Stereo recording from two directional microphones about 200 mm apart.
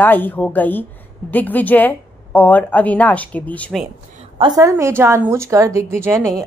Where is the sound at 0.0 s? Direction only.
10° left (ahead or behind).